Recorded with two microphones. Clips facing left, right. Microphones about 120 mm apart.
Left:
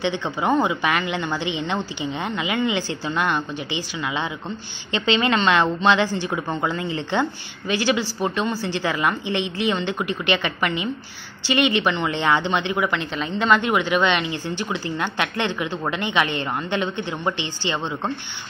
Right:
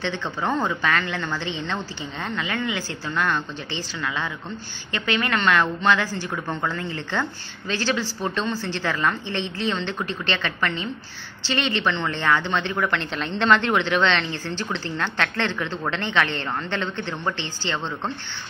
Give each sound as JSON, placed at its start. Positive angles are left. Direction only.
{"t": 0.0, "sound": "a woman's voice", "side_deg": 15}
{"t": 12.7, "sound": "a woman's voice", "side_deg": 5}